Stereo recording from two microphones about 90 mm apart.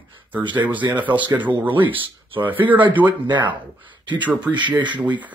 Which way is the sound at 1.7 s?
65° right (ahead or behind).